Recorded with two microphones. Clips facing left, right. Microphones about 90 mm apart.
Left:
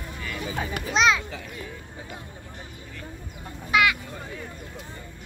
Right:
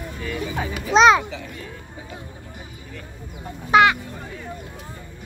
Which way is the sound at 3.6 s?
40° right (ahead or behind).